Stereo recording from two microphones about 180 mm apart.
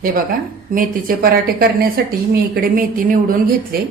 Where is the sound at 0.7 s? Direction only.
50° right (ahead or behind).